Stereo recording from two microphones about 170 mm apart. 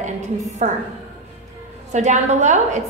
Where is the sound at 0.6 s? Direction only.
45° right (ahead or behind).